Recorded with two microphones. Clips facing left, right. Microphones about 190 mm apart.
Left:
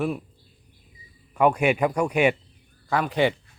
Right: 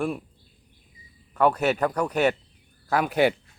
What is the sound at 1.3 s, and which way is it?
Speech, 10° left (ahead or behind).